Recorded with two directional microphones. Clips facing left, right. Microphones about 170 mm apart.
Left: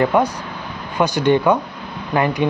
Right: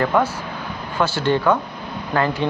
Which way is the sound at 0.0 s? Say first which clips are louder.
Left 2 dB; 15° left (ahead or behind).